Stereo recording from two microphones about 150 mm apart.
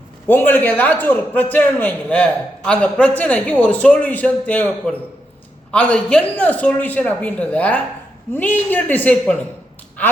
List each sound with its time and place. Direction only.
0.3 s a man's voice: 15° left (ahead or behind)